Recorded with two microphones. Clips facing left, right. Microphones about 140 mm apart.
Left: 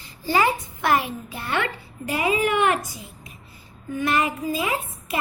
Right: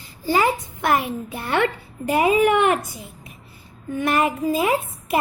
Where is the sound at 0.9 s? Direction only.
50° right (ahead or behind).